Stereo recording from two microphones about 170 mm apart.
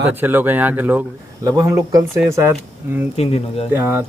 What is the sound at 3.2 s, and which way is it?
Speech, 35° left (ahead or behind).